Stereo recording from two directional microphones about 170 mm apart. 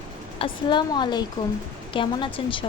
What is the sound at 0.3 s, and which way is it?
A woman's voice, 30° left (ahead or behind).